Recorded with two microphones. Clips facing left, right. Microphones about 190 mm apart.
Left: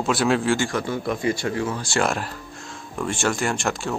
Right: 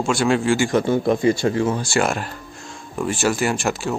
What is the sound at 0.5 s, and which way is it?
Speech, 20° right (ahead or behind).